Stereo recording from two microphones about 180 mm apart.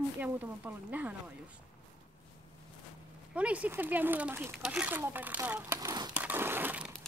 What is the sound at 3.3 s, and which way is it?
Speech, 5° right (ahead or behind).